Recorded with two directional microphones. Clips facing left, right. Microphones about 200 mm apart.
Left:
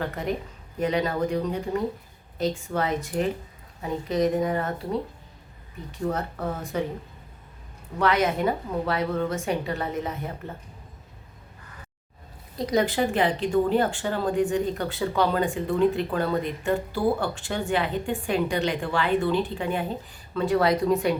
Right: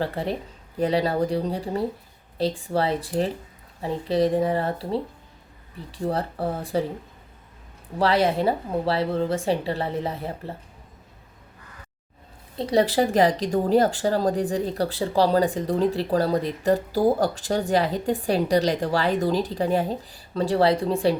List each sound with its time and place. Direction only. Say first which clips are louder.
0.0 s speech: right 2 dB; 30° right (ahead or behind)
7.9 s speech: right 2 dB; 30° right (ahead or behind)
12.5 s speech: right 3 dB; 30° right (ahead or behind)